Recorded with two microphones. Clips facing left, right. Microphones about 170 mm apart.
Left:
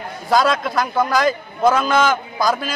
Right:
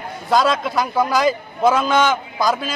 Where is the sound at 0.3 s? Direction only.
Centre (ahead or behind).